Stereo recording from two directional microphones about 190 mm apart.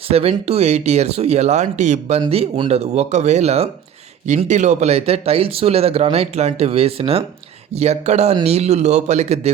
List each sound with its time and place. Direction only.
0.1 s speech: 30° right (ahead or behind)